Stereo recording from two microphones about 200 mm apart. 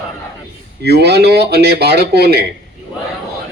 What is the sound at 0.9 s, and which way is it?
Speech, 55° right (ahead or behind).